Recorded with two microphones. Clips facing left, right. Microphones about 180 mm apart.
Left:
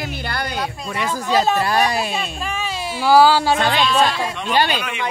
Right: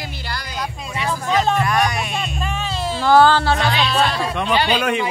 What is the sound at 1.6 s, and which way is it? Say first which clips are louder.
Speech: left 1 dB; 30° left (ahead or behind).